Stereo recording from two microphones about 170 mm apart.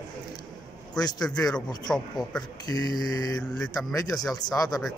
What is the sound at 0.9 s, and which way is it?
Mantra, 25° left (ahead or behind).